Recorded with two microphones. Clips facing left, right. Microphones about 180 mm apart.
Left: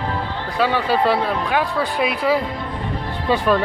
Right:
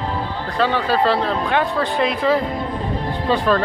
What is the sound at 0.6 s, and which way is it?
Speech, 10° left (ahead or behind).